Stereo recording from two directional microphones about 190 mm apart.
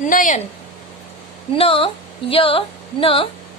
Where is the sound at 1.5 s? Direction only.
30° left (ahead or behind).